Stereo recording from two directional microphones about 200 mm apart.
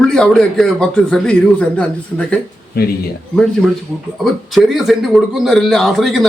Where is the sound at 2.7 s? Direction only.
50° left (ahead or behind).